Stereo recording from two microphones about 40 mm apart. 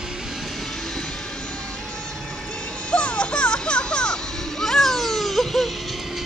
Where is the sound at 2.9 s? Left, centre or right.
Left.